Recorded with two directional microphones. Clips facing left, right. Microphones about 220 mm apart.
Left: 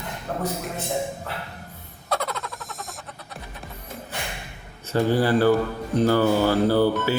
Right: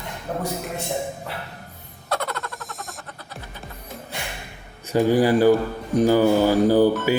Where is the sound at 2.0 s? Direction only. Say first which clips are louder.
Right 1 dB; centre (ahead or behind).